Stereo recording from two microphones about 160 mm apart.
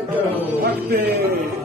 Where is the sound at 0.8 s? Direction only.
80° right.